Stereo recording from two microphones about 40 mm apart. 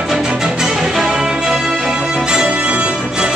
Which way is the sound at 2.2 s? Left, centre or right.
Right.